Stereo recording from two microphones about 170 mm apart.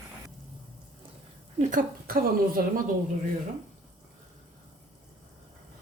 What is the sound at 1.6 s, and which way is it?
Speech, 50° right (ahead or behind).